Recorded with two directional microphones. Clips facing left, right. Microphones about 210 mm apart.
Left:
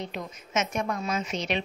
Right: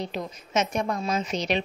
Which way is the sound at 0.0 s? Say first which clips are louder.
Right 3 dB; 35° right (ahead or behind).